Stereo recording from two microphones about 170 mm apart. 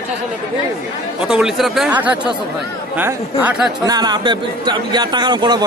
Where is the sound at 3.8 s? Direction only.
25° right (ahead or behind).